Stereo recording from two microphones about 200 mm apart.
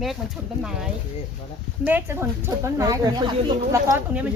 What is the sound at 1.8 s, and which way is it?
Speech, 10° right (ahead or behind).